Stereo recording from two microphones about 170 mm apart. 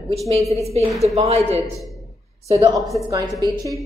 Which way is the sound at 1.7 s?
Centre (ahead or behind).